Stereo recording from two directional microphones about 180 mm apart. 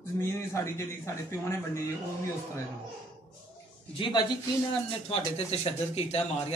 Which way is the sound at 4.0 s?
25° left (ahead or behind).